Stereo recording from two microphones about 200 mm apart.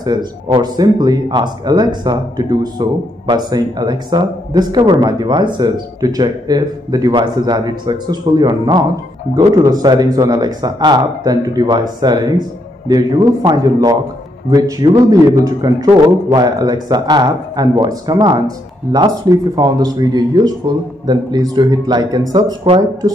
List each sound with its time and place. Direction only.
0.0 s speech: 20° right (ahead or behind)